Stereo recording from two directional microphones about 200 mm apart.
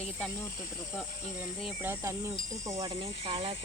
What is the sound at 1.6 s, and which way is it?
Speech, centre (ahead or behind).